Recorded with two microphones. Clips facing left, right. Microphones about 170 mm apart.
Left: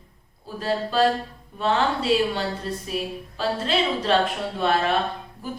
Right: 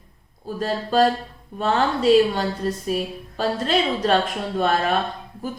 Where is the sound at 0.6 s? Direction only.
45° right (ahead or behind).